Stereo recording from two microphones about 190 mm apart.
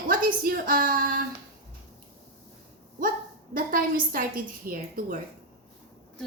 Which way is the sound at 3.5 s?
50° right (ahead or behind).